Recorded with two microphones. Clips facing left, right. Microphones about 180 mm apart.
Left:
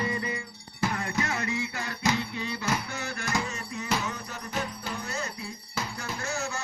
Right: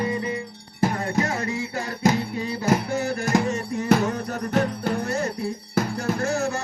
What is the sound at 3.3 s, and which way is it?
Music, 50° right (ahead or behind).